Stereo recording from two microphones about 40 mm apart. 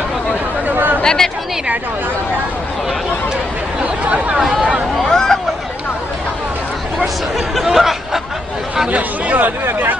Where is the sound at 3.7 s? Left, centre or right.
Right.